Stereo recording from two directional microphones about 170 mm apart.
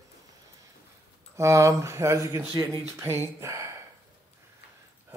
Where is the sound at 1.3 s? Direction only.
15° right (ahead or behind).